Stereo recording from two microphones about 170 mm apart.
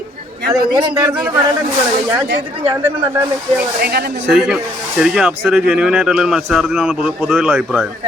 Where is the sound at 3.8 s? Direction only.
65° right (ahead or behind).